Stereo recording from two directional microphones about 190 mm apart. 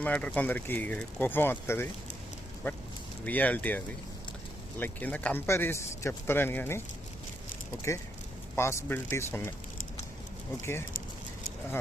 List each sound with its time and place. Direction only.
0.0 s speech: 5° left (ahead or behind)
3.2 s speech: 10° left (ahead or behind)
7.9 s speech: 15° left (ahead or behind)
10.6 s speech: 15° left (ahead or behind)